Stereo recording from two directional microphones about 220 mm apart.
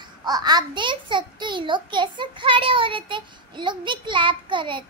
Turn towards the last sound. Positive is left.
turn(degrees=-20)  # may be behind; listen again after turning